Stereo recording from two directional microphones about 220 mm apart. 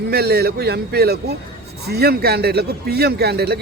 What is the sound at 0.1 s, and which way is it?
A man's voice, 45° right (ahead or behind).